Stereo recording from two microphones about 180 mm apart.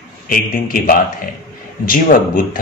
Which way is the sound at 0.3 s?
50° left (ahead or behind).